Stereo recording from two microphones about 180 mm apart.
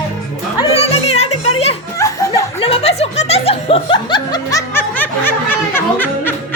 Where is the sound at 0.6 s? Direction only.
35° left (ahead or behind).